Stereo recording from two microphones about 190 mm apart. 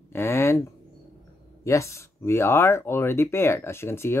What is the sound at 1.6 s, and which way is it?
Speech, 15° left (ahead or behind).